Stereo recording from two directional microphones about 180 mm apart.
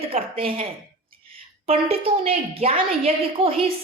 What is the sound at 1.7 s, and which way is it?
A woman's voice, 35° right (ahead or behind).